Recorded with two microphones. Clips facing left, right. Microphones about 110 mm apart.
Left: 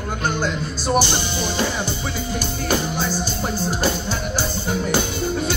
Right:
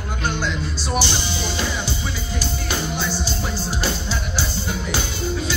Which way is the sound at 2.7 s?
45° left (ahead or behind).